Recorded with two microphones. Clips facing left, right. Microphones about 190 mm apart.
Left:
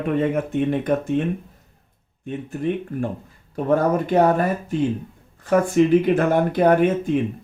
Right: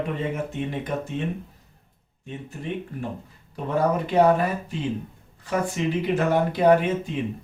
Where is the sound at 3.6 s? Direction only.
50° left (ahead or behind).